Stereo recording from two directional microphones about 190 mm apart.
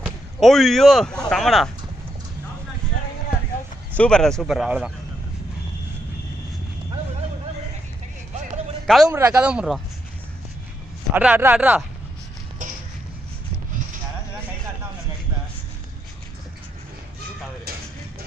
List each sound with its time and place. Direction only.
0.0 s speech: centre (ahead or behind)
3.9 s speech: 5° left (ahead or behind)
8.8 s a man's voice: centre (ahead or behind)
11.1 s speech: 10° right (ahead or behind)